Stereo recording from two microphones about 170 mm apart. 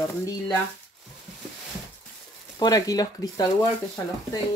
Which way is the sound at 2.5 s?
20° left (ahead or behind).